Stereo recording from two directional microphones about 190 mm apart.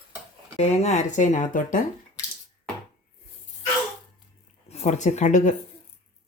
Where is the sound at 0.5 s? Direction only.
35° left (ahead or behind).